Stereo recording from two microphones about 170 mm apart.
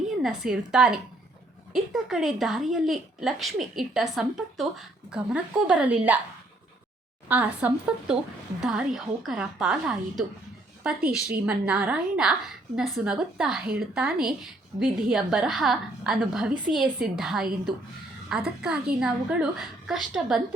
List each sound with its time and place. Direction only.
0.2 s speech: 5° right (ahead or behind)
7.3 s speech: 10° right (ahead or behind)
11.0 s a woman's voice: 60° right (ahead or behind)
11.4 s speech: 5° right (ahead or behind)
18.6 s speech: 5° right (ahead or behind)